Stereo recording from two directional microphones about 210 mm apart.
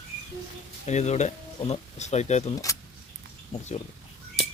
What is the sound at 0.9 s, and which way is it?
Speech, 30° left (ahead or behind).